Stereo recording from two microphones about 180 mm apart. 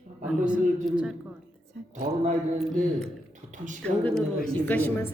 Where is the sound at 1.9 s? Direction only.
40° right (ahead or behind).